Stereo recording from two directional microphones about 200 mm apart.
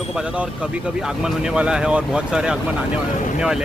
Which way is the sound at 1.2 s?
5° right (ahead or behind).